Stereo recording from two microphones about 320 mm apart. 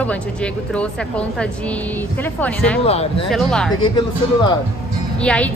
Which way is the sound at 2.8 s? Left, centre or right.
Centre.